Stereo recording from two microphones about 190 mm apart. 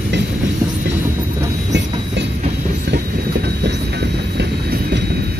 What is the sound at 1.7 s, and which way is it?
Train, 65° right (ahead or behind).